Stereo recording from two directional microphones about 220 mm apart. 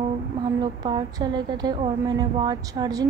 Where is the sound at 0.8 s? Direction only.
20° right (ahead or behind).